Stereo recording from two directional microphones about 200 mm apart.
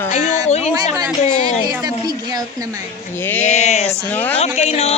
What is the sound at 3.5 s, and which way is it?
Speech, 35° left (ahead or behind).